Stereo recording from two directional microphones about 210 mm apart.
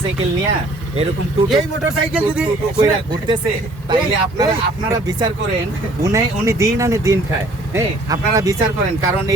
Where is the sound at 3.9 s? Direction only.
20° right (ahead or behind).